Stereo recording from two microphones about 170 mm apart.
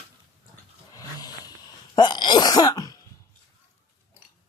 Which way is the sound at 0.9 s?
20° left (ahead or behind).